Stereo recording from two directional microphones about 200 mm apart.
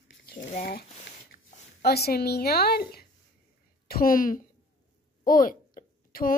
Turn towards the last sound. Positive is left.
turn(degrees=45)  # may be behind; listen again after turning